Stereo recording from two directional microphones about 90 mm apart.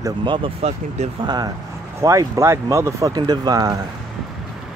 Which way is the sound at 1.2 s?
50° right (ahead or behind).